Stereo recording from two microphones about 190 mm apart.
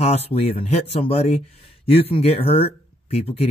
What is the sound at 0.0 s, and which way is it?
A man's voice, 35° left (ahead or behind).